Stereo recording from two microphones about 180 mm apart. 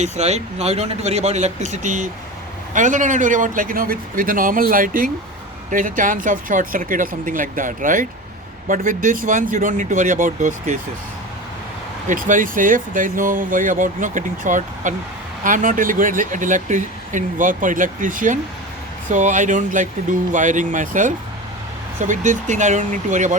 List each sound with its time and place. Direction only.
0.0 s speech: 40° right (ahead or behind)
12.0 s speech: 45° right (ahead or behind)